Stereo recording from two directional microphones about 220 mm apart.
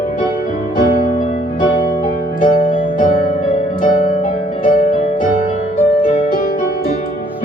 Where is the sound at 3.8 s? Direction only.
35° left (ahead or behind).